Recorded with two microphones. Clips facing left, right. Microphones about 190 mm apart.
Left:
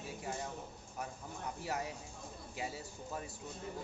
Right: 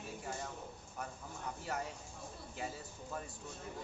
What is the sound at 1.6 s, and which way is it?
Speech, 10° left (ahead or behind).